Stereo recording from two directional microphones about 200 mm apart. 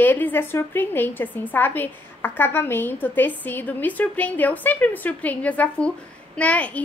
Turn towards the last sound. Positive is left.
turn(degrees=5)  # may be behind; listen again after turning